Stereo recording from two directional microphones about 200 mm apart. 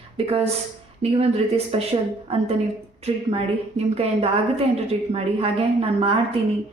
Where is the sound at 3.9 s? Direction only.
30° right (ahead or behind).